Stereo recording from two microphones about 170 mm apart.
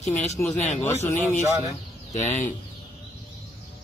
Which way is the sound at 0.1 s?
10° left (ahead or behind).